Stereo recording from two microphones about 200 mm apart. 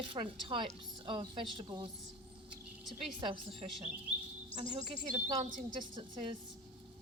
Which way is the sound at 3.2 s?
25° right (ahead or behind).